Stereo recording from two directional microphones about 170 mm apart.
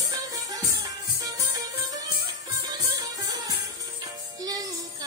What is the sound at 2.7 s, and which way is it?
Music, 20° right (ahead or behind).